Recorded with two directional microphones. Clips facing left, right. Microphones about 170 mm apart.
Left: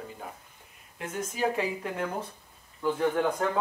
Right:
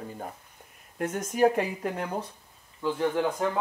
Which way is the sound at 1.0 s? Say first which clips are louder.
Right 6 dB; 50° right (ahead or behind).